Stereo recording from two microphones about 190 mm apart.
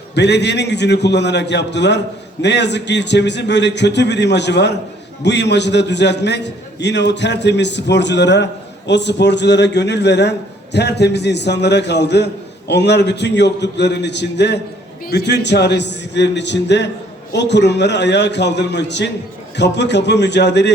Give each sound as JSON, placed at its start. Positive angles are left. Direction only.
{"t": 0.1, "sound": "a man's voice", "side_deg": 65}